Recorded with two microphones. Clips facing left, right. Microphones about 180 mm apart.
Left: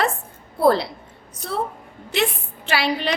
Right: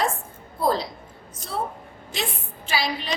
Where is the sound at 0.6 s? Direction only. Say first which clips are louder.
Left 6 dB; 65° left (ahead or behind).